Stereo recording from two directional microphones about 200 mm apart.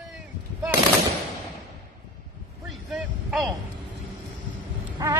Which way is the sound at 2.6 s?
Centre (ahead or behind).